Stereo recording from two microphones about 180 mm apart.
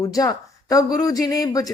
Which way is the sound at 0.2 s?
20° left (ahead or behind).